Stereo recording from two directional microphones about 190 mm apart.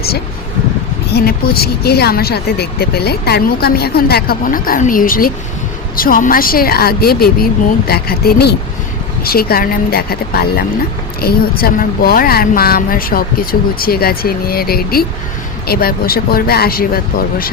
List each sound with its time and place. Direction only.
1.1 s speech: 55° left (ahead or behind)